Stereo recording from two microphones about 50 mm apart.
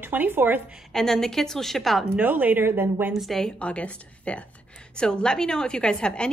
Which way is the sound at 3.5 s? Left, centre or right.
Left.